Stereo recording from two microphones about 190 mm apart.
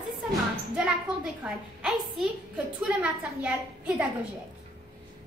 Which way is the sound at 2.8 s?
5° right (ahead or behind).